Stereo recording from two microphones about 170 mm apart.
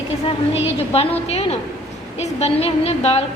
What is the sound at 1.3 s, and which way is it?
A woman's voice, 40° left (ahead or behind).